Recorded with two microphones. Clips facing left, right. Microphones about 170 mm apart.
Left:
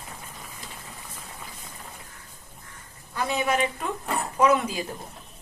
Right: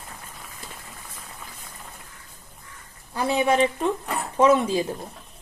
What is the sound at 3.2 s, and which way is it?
A woman's voice, 30° right (ahead or behind).